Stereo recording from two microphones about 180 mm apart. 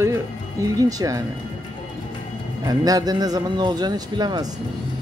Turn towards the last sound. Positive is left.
turn(degrees=-25)  # may be behind; listen again after turning